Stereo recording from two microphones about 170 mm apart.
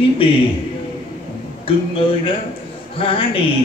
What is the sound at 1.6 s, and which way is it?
A man's voice, 30° left (ahead or behind).